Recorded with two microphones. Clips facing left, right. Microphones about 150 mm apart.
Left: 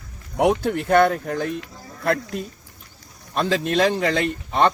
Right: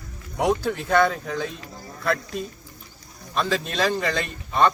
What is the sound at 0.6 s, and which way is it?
Speech, 55° left (ahead or behind).